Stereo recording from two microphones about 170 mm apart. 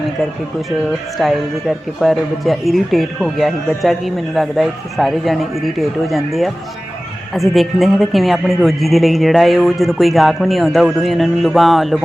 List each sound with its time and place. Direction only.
1.2 s a woman's voice: centre (ahead or behind)